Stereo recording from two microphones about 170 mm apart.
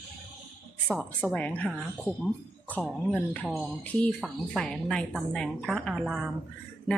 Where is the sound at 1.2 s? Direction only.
10° left (ahead or behind).